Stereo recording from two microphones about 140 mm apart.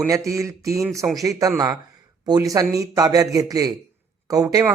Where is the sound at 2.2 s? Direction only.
25° right (ahead or behind).